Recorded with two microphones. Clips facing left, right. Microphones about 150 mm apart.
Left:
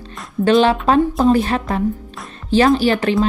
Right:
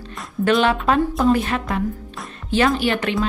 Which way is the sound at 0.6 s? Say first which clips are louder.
Left 4 dB; 35° left (ahead or behind).